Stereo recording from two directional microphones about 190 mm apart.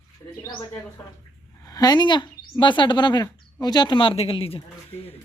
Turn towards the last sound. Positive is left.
turn(degrees=30)  # may be behind; listen again after turning